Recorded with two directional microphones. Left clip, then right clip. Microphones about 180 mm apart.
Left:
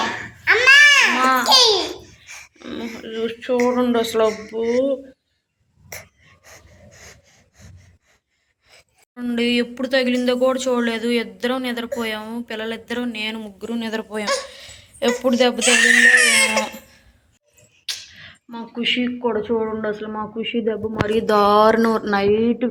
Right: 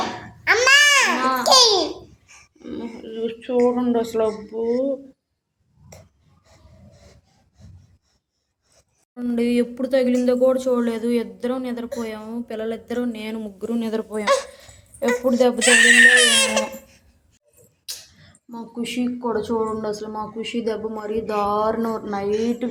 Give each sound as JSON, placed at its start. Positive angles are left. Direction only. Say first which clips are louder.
{"t": 0.4, "sound": "a sound", "louder": "left 3 dB", "side_deg": -60}
{"t": 1.2, "sound": "babbling", "louder": "left 4 dB", "side_deg": 0}
{"t": 1.5, "sound": "babbling", "louder": "right 2 dB", "side_deg": -70}
{"t": 2.2, "sound": "a sound", "louder": "left 5 dB", "side_deg": 5}
{"t": 5.9, "sound": "gasp", "louder": "left 11 dB", "side_deg": 0}
{"t": 6.4, "sound": "gasp", "louder": "left 7 dB", "side_deg": 10}
{"t": 9.1, "sound": "speech", "louder": "left 1 dB", "side_deg": -10}
{"t": 14.5, "sound": "a sound", "louder": "left 6 dB", "side_deg": -10}
{"t": 15.2, "sound": "a woman's voice", "louder": "even", "side_deg": -5}
{"t": 17.8, "sound": "a sound", "louder": "left 7 dB", "side_deg": 0}
{"t": 18.8, "sound": "a woman's voice", "louder": "left 6 dB", "side_deg": 0}
{"t": 21.1, "sound": "a woman's voice", "louder": "left 7 dB", "side_deg": 25}